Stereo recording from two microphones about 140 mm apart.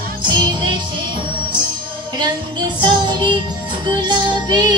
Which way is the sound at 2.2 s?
35° right (ahead or behind).